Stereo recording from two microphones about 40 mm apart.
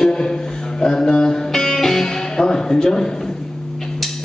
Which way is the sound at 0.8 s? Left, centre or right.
Centre.